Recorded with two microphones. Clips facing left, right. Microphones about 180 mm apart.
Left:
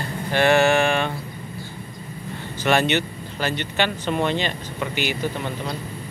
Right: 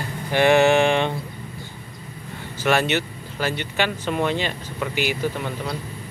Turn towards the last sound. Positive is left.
turn(degrees=-5)  # may be behind; listen again after turning